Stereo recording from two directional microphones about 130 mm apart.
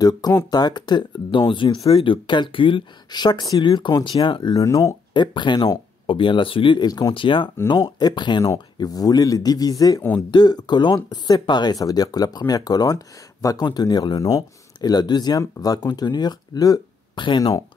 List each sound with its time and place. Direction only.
0.0 s speech: 25° left (ahead or behind)
5.1 s speech: 35° left (ahead or behind)